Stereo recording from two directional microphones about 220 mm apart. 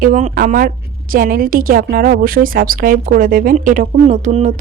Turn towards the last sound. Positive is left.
turn(degrees=-35)  # may be behind; listen again after turning